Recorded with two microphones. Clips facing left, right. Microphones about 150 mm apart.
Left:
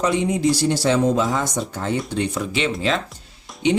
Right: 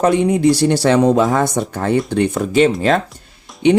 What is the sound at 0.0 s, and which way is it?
Speech, 55° right (ahead or behind).